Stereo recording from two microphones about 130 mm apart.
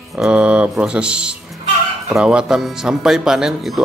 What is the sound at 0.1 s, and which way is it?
Speech, 10° right (ahead or behind).